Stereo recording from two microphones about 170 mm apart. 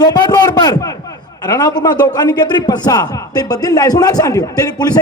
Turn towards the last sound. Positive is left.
turn(degrees=20)  # may be behind; listen again after turning